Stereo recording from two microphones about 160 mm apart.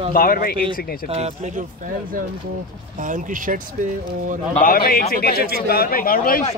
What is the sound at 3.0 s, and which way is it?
Speech, 55° right (ahead or behind).